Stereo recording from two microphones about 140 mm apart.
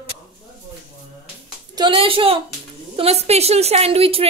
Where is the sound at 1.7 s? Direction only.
35° right (ahead or behind).